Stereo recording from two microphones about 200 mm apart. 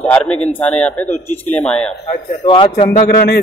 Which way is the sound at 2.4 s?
25° left (ahead or behind).